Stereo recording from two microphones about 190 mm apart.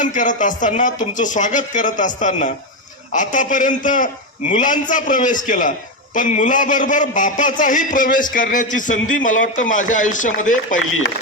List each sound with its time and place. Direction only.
0.0 s a man's voice: 40° left (ahead or behind)